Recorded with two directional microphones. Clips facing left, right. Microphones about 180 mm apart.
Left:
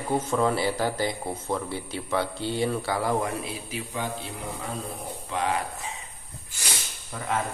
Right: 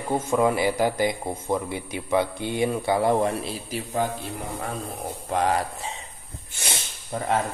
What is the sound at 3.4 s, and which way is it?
Speech, 40° right (ahead or behind).